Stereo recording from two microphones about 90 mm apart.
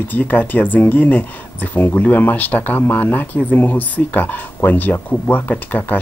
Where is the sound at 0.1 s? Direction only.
20° left (ahead or behind).